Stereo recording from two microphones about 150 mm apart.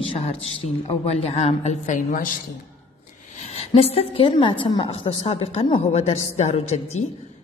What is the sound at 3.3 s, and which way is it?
A woman's voice, 45° left (ahead or behind).